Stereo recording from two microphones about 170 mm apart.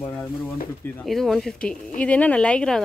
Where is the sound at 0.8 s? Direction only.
5° left (ahead or behind).